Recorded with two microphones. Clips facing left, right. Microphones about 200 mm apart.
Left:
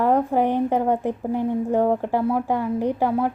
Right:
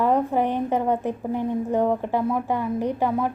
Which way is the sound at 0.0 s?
15° left (ahead or behind).